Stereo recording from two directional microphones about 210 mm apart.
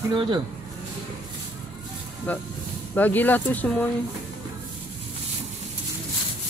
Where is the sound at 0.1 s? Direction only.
25° right (ahead or behind).